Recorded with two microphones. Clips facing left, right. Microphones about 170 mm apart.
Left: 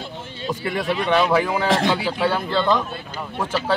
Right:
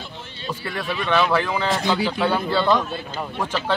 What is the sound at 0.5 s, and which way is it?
A man's voice, 20° left (ahead or behind).